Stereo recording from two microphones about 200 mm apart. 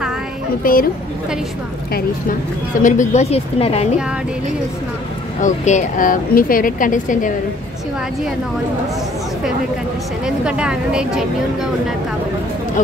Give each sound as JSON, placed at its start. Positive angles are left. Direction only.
{"t": 0.7, "sound": "speech", "side_deg": 45}
{"t": 2.8, "sound": "speech", "side_deg": 35}
{"t": 5.4, "sound": "speech", "side_deg": 40}
{"t": 10.2, "sound": "speech", "side_deg": -5}